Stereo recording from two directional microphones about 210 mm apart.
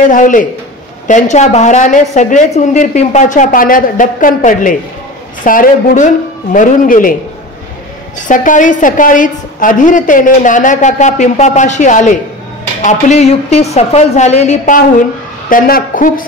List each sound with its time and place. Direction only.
0.1 s a woman's voice: 40° left (ahead or behind)
8.3 s a woman's voice: 40° left (ahead or behind)